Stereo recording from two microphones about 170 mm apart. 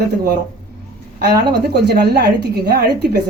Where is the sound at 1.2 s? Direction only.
80° right.